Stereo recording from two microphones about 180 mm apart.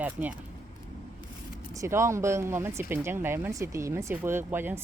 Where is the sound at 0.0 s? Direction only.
10° right (ahead or behind).